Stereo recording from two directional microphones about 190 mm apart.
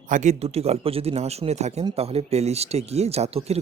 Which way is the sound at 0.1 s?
40° right (ahead or behind).